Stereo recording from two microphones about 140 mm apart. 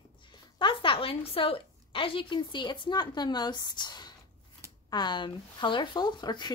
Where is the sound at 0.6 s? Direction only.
35° left (ahead or behind).